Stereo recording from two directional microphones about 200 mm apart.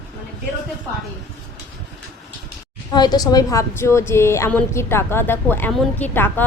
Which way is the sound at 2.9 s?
20° left (ahead or behind).